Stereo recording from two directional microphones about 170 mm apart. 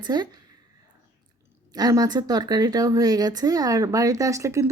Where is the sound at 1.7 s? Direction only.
20° right (ahead or behind).